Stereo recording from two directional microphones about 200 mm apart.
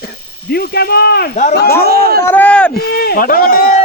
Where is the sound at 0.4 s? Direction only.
50° left (ahead or behind).